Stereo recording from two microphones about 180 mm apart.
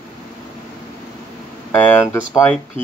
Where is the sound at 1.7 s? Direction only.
10° left (ahead or behind).